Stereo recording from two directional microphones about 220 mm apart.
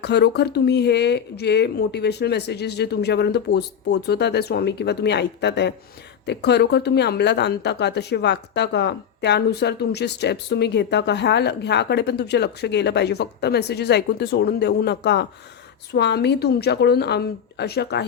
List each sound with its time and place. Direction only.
0.0 s a woman's voice: 50° left (ahead or behind)